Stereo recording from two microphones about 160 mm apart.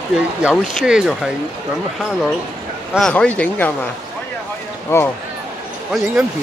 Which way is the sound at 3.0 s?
5° left (ahead or behind).